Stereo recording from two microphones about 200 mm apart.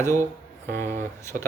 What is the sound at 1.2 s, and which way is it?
Speech, 15° left (ahead or behind).